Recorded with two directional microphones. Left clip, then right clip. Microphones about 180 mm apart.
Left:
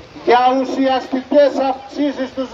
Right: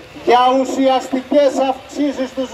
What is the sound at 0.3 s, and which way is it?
A man's voice, centre (ahead or behind).